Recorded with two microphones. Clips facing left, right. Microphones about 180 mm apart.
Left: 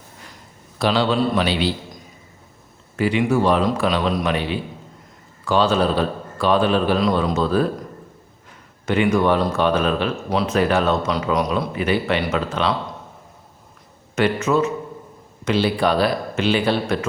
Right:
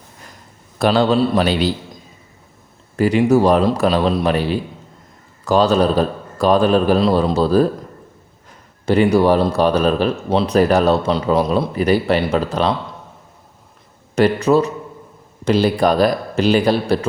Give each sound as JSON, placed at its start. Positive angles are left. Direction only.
{"t": 0.8, "sound": "a man's voice", "side_deg": -45}
{"t": 2.9, "sound": "speech", "side_deg": -40}
{"t": 8.9, "sound": "speech", "side_deg": -35}
{"t": 14.2, "sound": "speech", "side_deg": -35}